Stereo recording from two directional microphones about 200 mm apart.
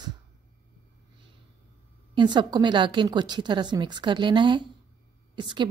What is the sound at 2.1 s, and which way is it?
A woman's voice, 25° right (ahead or behind).